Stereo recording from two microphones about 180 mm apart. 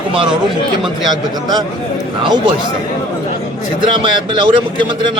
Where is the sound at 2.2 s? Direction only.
25° right (ahead or behind).